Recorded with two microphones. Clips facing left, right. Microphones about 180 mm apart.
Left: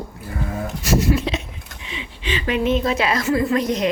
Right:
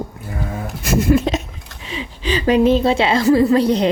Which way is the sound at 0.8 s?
55° right (ahead or behind).